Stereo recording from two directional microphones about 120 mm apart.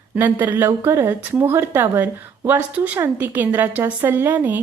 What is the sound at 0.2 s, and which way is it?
Speech, 15° right (ahead or behind).